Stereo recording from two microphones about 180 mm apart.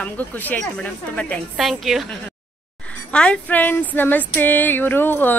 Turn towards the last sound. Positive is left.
turn(degrees=10)  # may be behind; listen again after turning